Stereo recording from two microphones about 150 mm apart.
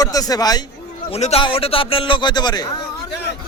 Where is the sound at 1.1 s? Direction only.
45° left (ahead or behind); by 2.7 s 30° left (ahead or behind).